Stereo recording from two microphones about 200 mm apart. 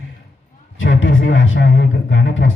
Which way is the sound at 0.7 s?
70° left (ahead or behind).